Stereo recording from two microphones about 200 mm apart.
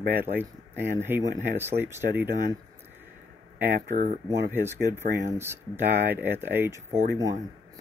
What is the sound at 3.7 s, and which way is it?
Speech, 40° right (ahead or behind).